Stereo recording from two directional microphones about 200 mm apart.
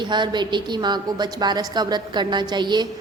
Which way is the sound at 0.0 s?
20° right (ahead or behind).